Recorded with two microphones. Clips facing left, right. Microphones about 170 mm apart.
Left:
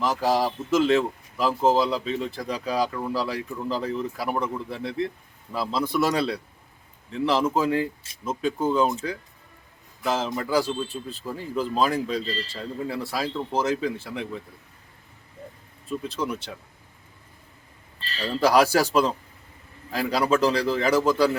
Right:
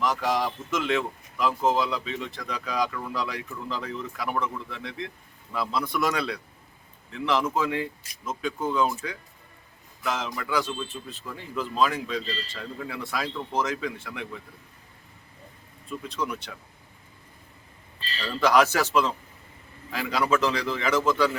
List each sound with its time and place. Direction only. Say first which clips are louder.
0.0 s speech: left 3 dB; 30° left (ahead or behind)
10.0 s speech: left 5 dB; 30° left (ahead or behind)
16.0 s speech: left 1 dB; 30° left (ahead or behind)
18.3 s speech: left 2 dB; 35° left (ahead or behind)